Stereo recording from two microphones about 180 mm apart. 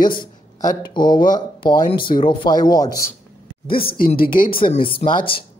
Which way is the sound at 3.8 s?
55° left (ahead or behind).